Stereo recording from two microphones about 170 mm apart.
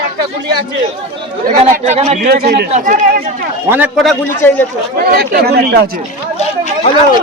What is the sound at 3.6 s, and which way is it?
Speech, 10° right (ahead or behind).